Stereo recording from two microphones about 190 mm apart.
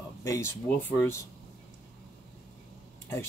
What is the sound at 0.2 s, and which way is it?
Speech, 15° left (ahead or behind).